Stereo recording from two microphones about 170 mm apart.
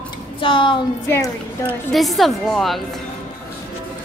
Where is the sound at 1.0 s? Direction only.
15° left (ahead or behind).